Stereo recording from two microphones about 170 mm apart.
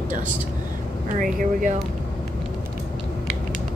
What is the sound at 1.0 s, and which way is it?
Speech, 50° right (ahead or behind).